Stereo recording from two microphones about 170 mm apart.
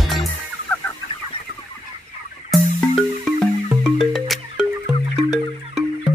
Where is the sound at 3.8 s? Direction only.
Centre (ahead or behind).